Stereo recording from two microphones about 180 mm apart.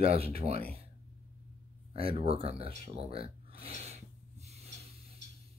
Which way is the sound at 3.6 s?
35° right (ahead or behind).